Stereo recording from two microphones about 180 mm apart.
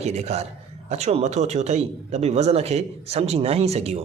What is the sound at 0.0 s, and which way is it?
A man's voice, 35° right (ahead or behind).